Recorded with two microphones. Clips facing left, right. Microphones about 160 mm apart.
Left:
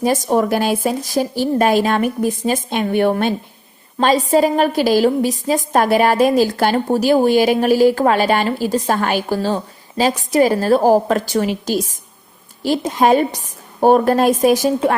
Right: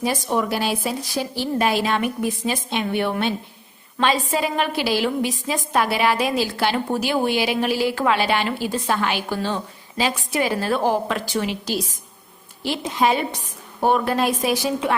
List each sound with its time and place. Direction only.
0.0 s a woman's voice: 45° left (ahead or behind)